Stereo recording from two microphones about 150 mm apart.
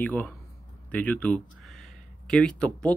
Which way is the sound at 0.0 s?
10° left (ahead or behind).